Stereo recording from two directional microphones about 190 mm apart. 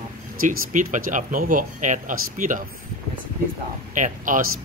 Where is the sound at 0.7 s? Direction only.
45° right (ahead or behind).